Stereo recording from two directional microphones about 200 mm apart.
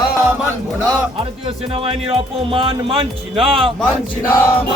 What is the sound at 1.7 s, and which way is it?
Speech, 30° right (ahead or behind).